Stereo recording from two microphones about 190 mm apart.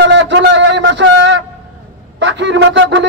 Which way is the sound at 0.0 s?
70° right (ahead or behind).